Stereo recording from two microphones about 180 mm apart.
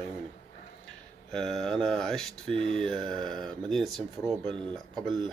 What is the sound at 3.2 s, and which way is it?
Speech, 5° left (ahead or behind).